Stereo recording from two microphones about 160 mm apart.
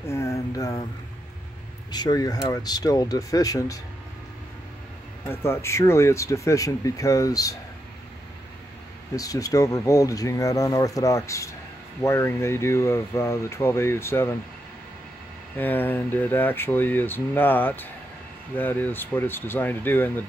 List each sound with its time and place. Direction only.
0.1 s a sound: 20° left (ahead or behind)
1.9 s speech: 25° left (ahead or behind)
5.2 s speech: 15° left (ahead or behind)
9.1 s speech: 20° left (ahead or behind)
15.5 s speech: 10° left (ahead or behind)